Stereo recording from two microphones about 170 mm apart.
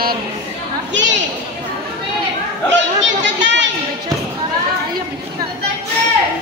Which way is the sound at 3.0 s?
90° right.